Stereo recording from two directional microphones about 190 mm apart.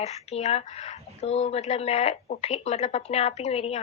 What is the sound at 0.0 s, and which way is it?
Speech, 35° left (ahead or behind).